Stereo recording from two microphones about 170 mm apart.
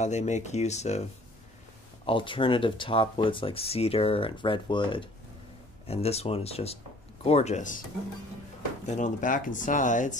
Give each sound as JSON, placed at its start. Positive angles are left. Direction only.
{"t": 0.0, "sound": "speech", "side_deg": 40}
{"t": 2.0, "sound": "speech", "side_deg": 30}
{"t": 8.8, "sound": "speech", "side_deg": 45}